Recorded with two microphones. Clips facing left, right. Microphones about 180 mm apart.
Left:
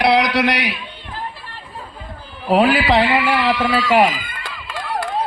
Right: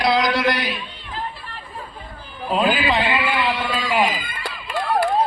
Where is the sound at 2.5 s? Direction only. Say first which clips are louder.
Left 5 dB; 75° left (ahead or behind).